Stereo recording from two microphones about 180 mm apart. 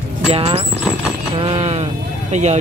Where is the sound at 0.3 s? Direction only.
35° right (ahead or behind).